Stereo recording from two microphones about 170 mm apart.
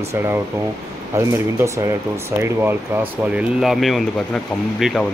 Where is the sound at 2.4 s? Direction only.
10° right (ahead or behind).